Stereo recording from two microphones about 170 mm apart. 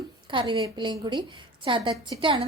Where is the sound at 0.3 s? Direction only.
30° right (ahead or behind).